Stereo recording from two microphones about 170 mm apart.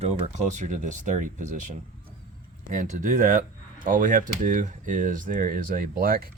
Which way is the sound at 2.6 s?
50° right (ahead or behind).